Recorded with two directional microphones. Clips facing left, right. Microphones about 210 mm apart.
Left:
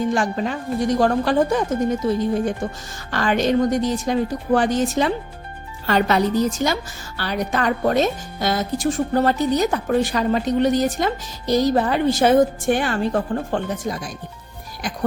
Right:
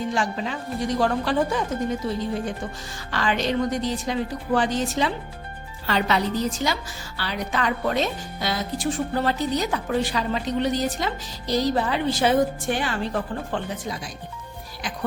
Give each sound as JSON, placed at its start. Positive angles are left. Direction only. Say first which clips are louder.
{"t": 0.1, "sound": "speech", "louder": "left 5 dB", "side_deg": 50}
{"t": 3.1, "sound": "speech", "louder": "left 5 dB", "side_deg": 50}